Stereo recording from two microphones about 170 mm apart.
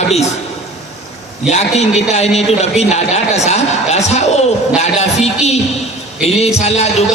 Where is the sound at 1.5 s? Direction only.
40° left (ahead or behind).